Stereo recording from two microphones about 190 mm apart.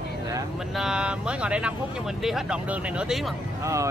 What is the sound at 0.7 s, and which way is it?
Speech, 5° right (ahead or behind).